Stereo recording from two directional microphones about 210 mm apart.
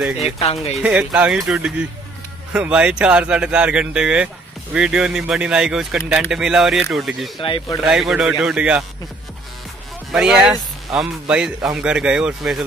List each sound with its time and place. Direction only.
0.4 s speech: 30° left (ahead or behind)
0.8 s speech: 5° right (ahead or behind)
7.4 s speech: 25° left (ahead or behind)
7.8 s speech: 5° right (ahead or behind)
10.1 s speech: centre (ahead or behind)